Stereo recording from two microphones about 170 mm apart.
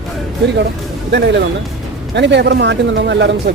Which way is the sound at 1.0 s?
85° right.